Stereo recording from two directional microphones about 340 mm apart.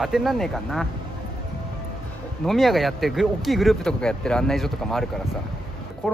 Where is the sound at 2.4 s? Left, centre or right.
Centre.